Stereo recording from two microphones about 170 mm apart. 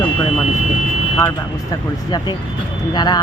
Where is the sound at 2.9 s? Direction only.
25° left (ahead or behind).